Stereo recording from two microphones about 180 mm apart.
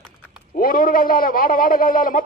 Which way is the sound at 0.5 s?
50° left (ahead or behind).